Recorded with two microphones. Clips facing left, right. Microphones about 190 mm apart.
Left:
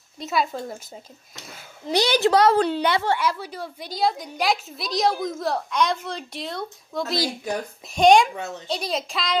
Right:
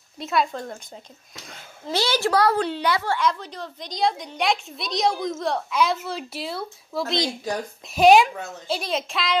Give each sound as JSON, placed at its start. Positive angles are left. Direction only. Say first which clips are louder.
{"t": 0.2, "sound": "a woman's voice", "louder": "right 1 dB", "side_deg": 0}
{"t": 1.9, "sound": "a child's voice", "louder": "left 3 dB", "side_deg": 15}
{"t": 3.2, "sound": "a woman's voice", "louder": "right 1 dB", "side_deg": 10}